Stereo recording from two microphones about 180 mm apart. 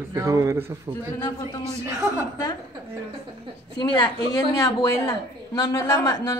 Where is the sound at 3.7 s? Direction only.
25° left (ahead or behind).